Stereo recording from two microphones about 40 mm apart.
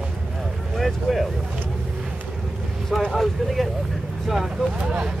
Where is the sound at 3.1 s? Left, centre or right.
Centre.